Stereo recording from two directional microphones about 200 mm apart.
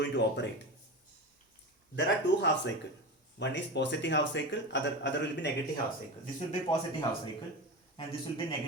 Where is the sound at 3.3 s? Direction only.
60° left (ahead or behind).